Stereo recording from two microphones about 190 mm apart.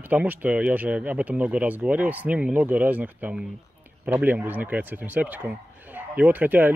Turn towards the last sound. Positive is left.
turn(degrees=-10)  # may be behind; listen again after turning